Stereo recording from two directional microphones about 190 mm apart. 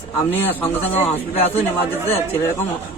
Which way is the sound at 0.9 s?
35° left (ahead or behind).